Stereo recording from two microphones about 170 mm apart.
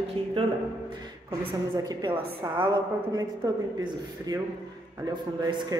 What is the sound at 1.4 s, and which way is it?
A woman's voice, 20° right (ahead or behind).